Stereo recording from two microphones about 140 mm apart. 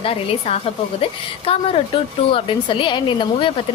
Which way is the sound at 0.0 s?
45° left (ahead or behind).